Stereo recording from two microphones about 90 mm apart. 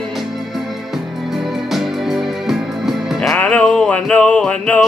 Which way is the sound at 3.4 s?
15° left (ahead or behind).